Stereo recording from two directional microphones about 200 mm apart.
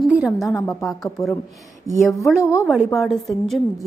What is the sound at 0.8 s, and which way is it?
Speech, centre (ahead or behind).